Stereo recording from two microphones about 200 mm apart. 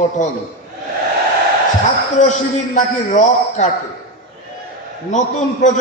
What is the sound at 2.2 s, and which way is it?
A man's voice, 40° left (ahead or behind).